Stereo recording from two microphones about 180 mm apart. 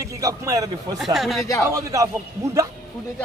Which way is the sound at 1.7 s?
20° right (ahead or behind).